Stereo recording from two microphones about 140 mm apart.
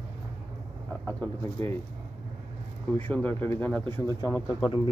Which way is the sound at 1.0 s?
15° left (ahead or behind).